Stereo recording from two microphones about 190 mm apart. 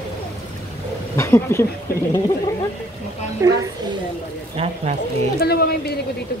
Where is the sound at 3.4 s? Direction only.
15° right (ahead or behind).